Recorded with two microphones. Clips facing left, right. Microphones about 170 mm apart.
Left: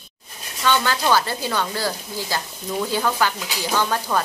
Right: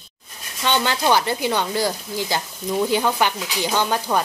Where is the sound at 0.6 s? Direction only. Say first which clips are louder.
Even; 20° right (ahead or behind).